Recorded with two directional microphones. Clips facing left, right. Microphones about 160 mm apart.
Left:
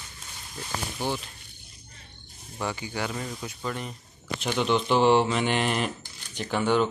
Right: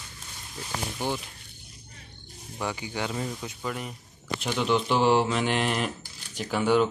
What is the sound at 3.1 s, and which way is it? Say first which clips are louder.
Speech: right 2 dB; 5° right (ahead or behind).